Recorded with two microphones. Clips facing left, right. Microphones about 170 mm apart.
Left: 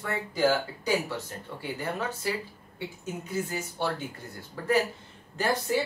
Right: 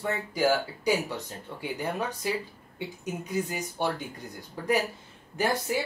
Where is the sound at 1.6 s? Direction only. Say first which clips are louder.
Right 1 dB; 15° right (ahead or behind).